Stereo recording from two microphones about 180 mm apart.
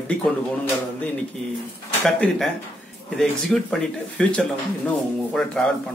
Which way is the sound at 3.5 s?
Centre (ahead or behind).